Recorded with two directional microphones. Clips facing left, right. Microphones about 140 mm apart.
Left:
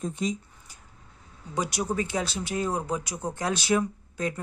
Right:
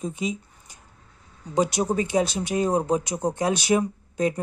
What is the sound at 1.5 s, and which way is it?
Speech, 20° right (ahead or behind).